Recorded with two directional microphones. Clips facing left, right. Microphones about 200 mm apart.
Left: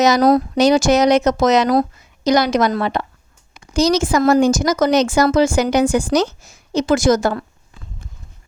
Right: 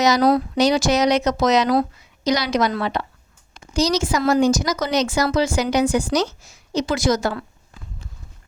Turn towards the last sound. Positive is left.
turn(degrees=45)  # may be behind; listen again after turning